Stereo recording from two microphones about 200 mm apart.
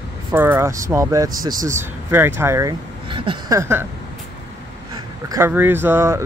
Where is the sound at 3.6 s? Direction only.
10° right (ahead or behind).